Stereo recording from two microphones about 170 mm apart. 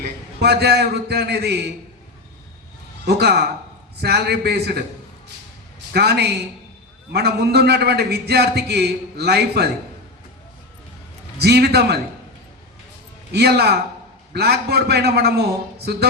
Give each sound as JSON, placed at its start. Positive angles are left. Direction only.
{"t": 0.3, "sound": "a man's voice", "side_deg": -70}
{"t": 3.1, "sound": "a man's voice", "side_deg": -70}
{"t": 5.9, "sound": "a man's voice", "side_deg": -75}
{"t": 11.4, "sound": "a man's voice", "side_deg": -70}
{"t": 13.3, "sound": "a man's voice", "side_deg": -70}